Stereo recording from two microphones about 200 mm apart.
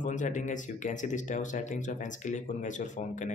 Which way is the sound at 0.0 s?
40° left (ahead or behind).